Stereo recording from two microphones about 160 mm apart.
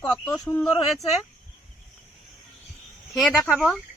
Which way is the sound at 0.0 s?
20° left (ahead or behind).